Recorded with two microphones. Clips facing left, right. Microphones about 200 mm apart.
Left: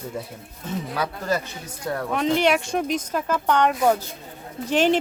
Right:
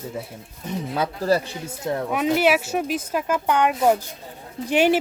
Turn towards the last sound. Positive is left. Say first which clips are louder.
# right 1 dB
turn(degrees=-10)  # may be behind; listen again after turning